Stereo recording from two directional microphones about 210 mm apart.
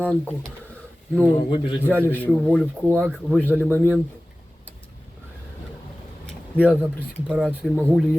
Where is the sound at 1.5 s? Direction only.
25° left (ahead or behind).